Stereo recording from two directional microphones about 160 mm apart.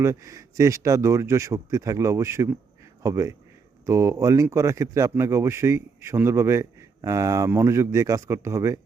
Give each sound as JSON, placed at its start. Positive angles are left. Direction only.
{"t": 0.0, "sound": "speech", "side_deg": -20}